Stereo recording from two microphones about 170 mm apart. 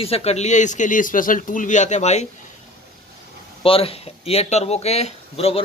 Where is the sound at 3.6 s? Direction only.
35° left (ahead or behind).